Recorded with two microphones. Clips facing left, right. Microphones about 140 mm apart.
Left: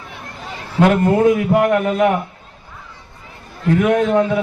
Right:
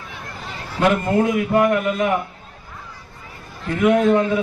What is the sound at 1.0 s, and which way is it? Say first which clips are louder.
Speech: left 5 dB; 65° left (ahead or behind).